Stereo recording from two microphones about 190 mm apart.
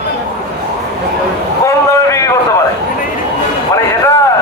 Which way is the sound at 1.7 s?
15° left (ahead or behind).